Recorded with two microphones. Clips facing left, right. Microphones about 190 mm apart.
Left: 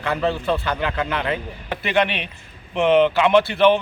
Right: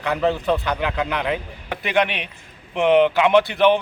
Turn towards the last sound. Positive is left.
turn(degrees=-15)  # may be behind; listen again after turning